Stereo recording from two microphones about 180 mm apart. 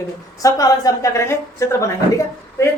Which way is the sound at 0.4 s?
20° left (ahead or behind).